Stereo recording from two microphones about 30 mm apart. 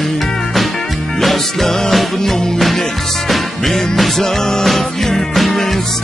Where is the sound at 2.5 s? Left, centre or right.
Centre.